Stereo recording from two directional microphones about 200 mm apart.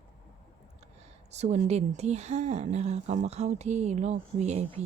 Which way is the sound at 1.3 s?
35° right (ahead or behind).